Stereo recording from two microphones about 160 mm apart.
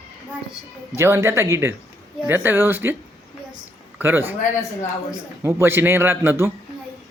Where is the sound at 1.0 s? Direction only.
15° right (ahead or behind).